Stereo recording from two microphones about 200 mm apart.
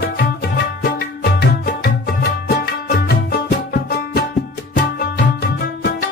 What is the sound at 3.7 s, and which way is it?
Music, 50° left (ahead or behind).